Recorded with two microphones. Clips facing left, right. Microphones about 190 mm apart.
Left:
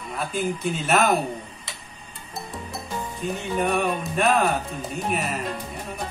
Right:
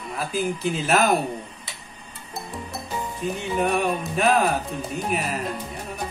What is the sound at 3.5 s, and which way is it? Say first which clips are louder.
A man's voice: right 1 dB; centre (ahead or behind).